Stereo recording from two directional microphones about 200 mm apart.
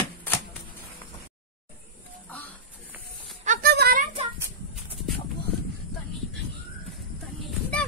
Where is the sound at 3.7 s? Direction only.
50° right (ahead or behind).